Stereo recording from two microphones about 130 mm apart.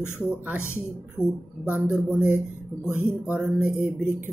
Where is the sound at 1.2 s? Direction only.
Centre (ahead or behind).